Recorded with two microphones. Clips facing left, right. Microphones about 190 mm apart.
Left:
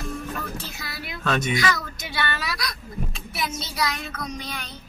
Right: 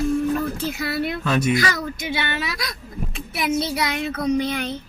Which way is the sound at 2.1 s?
20° right (ahead or behind).